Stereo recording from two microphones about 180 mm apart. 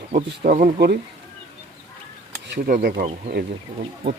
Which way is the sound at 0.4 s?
50° right (ahead or behind).